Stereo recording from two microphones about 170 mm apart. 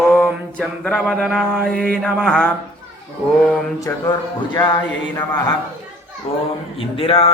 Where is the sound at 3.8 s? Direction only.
25° left (ahead or behind).